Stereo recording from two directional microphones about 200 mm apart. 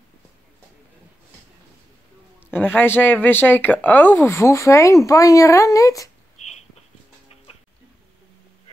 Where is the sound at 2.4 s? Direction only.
10° left (ahead or behind).